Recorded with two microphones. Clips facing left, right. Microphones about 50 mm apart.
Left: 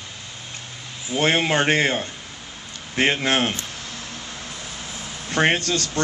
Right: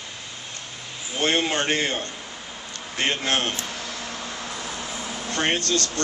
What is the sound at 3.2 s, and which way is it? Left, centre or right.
Speech, centre.